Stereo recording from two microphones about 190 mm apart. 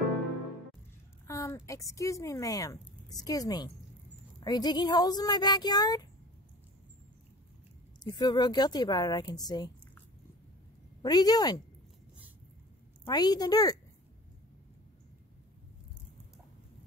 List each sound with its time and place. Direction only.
1.2 s speech: 15° left (ahead or behind)
8.0 s speech: 20° left (ahead or behind)
11.0 s speech: 20° left (ahead or behind)
13.0 s speech: 20° left (ahead or behind)